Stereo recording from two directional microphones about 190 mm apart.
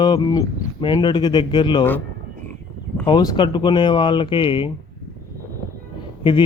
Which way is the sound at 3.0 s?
25° left (ahead or behind).